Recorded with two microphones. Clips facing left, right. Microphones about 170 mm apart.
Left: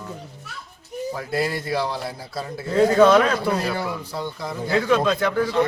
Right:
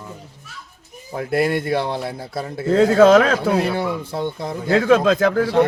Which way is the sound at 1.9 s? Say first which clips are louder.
Right 4 dB; 55° right (ahead or behind).